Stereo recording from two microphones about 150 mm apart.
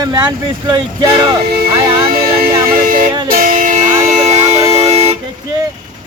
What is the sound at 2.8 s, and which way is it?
Music, 65° right (ahead or behind).